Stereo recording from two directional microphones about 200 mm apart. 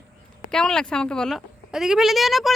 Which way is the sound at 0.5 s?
5° left (ahead or behind).